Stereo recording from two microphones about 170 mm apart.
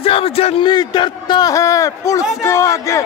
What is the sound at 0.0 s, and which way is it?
A man's voice, 35° left (ahead or behind).